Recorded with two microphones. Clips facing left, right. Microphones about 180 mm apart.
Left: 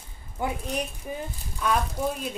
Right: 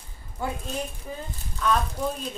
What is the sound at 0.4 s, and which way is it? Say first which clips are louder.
Speech: left 2 dB; 15° left (ahead or behind).